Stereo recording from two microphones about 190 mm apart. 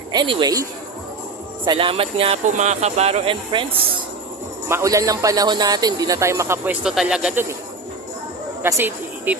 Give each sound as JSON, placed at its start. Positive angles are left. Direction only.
{"t": 0.1, "sound": "speech", "side_deg": -25}
{"t": 4.7, "sound": "speech", "side_deg": -15}
{"t": 8.6, "sound": "speech", "side_deg": -10}